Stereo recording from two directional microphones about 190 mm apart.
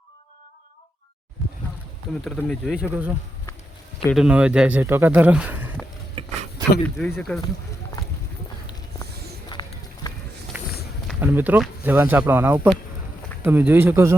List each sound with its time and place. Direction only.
1.4 s boat: centre (ahead or behind)
2.2 s speech: centre (ahead or behind)
6.2 s a sound: 30° right (ahead or behind)
6.8 s speech: 5° left (ahead or behind)
9.5 s run: 20° left (ahead or behind)
10.5 s run: 10° right (ahead or behind)
11.2 s speech: 10° right (ahead or behind)